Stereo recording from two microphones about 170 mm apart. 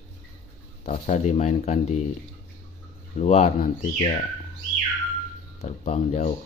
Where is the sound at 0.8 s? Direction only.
40° left (ahead or behind).